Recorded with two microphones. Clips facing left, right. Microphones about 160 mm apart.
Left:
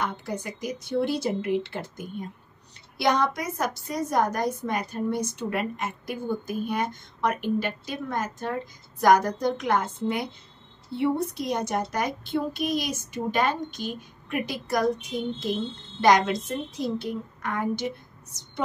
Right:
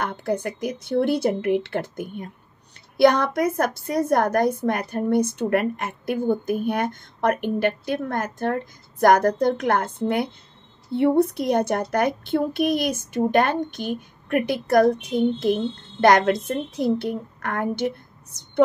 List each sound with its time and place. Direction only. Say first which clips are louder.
0.0 s a woman's voice: right 6 dB; 55° right (ahead or behind)